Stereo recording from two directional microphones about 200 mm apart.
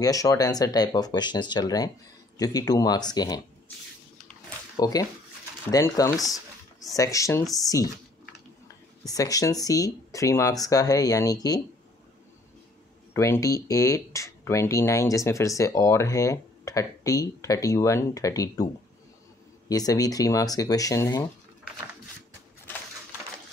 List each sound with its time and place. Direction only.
0.0 s speech: 15° left (ahead or behind)
4.7 s speech: 20° left (ahead or behind)
9.0 s speech: 15° left (ahead or behind)
13.1 s speech: 15° left (ahead or behind)
19.7 s speech: 20° left (ahead or behind)